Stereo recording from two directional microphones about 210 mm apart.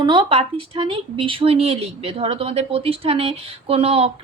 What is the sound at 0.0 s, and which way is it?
Speech, 20° right (ahead or behind).